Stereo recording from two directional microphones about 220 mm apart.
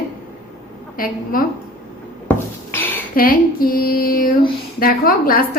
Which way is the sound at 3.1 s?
40° left (ahead or behind).